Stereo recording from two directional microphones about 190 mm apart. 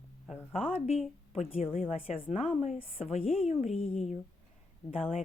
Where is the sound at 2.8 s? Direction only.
30° left (ahead or behind).